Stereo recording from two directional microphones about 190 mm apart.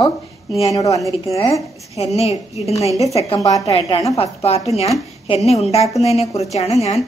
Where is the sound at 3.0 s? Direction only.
15° left (ahead or behind).